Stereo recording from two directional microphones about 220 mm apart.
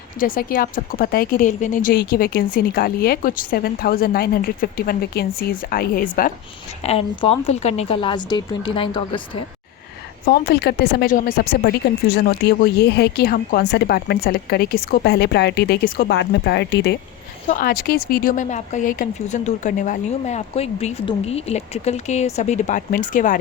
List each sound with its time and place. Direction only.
0.2 s speech: 40° left (ahead or behind)
6.8 s a woman's voice: 25° left (ahead or behind)
10.2 s speech: 45° left (ahead or behind)
17.4 s speech: 35° left (ahead or behind)